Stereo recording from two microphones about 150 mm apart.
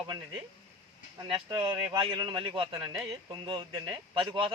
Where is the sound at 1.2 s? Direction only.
15° right (ahead or behind).